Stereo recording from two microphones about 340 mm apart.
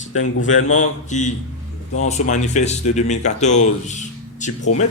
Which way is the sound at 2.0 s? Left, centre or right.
Centre.